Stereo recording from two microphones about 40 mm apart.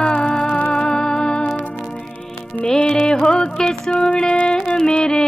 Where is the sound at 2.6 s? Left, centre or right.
Centre.